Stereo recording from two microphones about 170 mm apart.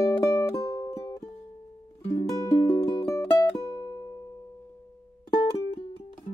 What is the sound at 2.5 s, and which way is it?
Music, 25° left (ahead or behind).